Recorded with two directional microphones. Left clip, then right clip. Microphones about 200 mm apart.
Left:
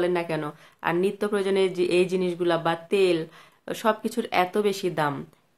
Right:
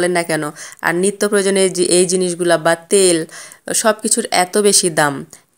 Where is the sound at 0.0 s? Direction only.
40° right (ahead or behind).